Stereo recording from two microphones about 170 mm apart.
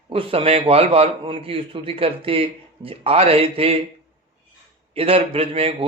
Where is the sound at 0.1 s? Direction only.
30° right (ahead or behind).